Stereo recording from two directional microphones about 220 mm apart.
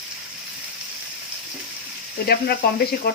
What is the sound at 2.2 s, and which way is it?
Speech, 45° left (ahead or behind).